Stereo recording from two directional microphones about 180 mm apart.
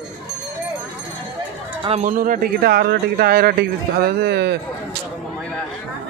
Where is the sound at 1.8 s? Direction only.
40° right (ahead or behind); by 4.5 s 65° right (ahead or behind).